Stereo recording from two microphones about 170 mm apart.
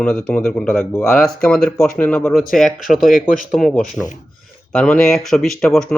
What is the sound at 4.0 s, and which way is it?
A man's voice, centre (ahead or behind).